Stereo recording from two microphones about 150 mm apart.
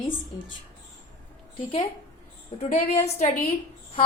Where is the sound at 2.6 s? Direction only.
50° left (ahead or behind).